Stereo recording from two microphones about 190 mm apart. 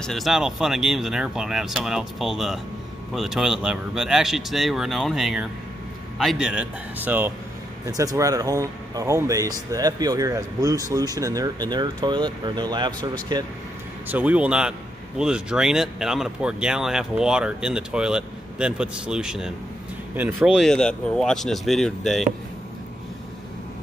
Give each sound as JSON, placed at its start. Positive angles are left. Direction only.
{"t": 0.0, "sound": "speech", "side_deg": 0}
{"t": 14.0, "sound": "speech", "side_deg": -10}